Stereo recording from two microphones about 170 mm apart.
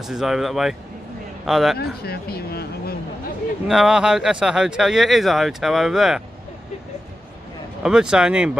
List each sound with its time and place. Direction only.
0.0 s speech: centre (ahead or behind)
1.8 s speech: 65° left (ahead or behind)
3.6 s speech: 5° right (ahead or behind)
7.8 s speech: 5° right (ahead or behind)